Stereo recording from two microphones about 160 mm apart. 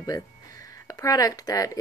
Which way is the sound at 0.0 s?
20° left (ahead or behind).